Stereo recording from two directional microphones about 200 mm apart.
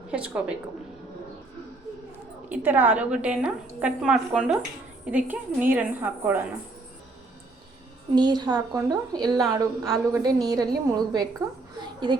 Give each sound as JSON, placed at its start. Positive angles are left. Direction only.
{"t": 0.1, "sound": "a woman's voice", "side_deg": -5}
{"t": 2.5, "sound": "a woman's voice", "side_deg": -10}
{"t": 8.1, "sound": "a woman's voice", "side_deg": -20}